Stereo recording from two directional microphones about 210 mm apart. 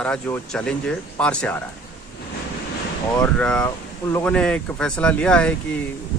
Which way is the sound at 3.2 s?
5° left (ahead or behind).